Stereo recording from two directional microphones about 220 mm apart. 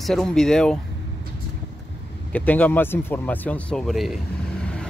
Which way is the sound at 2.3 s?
5° left (ahead or behind).